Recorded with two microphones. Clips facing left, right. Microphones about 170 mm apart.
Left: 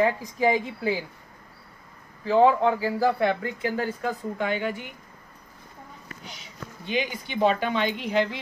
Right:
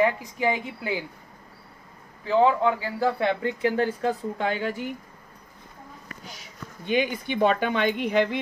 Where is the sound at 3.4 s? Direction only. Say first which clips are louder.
Right 4 dB; 25° right (ahead or behind).